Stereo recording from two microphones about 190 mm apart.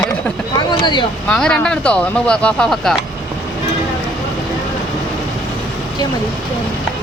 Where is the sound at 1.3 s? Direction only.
5° left (ahead or behind).